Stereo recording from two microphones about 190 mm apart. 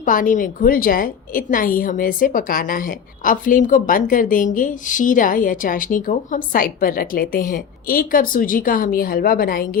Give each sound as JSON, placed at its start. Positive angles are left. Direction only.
{"t": 0.0, "sound": "a woman's voice", "side_deg": 45}